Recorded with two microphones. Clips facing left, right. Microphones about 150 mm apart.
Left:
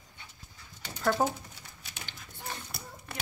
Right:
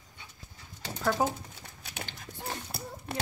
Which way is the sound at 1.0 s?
5° right (ahead or behind).